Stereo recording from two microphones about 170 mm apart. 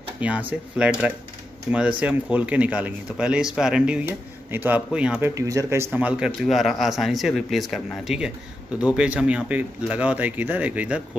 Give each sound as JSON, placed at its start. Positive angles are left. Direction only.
{"t": 0.2, "sound": "speech", "side_deg": -10}
{"t": 5.3, "sound": "speech", "side_deg": -20}